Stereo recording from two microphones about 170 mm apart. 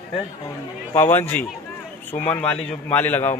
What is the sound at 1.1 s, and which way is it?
Speech, 10° left (ahead or behind).